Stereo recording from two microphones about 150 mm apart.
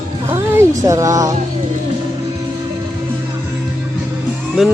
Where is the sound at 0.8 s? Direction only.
20° right (ahead or behind).